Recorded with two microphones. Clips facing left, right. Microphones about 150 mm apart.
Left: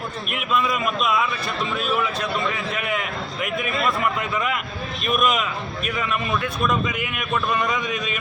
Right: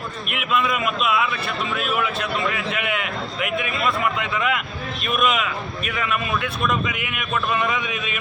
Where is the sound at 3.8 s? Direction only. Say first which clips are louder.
Even; centre (ahead or behind).